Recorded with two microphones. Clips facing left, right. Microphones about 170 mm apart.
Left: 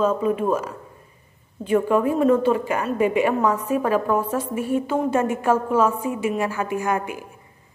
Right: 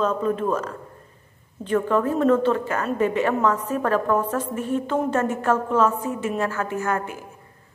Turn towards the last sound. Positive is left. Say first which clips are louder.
# left 2 dB
turn(degrees=15)  # may be behind; listen again after turning